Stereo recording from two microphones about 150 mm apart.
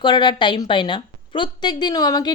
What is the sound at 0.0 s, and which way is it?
A woman's voice, 30° left (ahead or behind).